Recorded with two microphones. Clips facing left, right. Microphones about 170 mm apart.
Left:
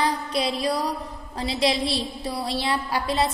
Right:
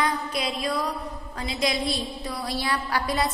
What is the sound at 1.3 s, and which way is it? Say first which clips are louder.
A woman's voice: left 4 dB; 30° left (ahead or behind).